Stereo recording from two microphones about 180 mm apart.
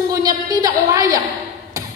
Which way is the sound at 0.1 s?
20° right (ahead or behind).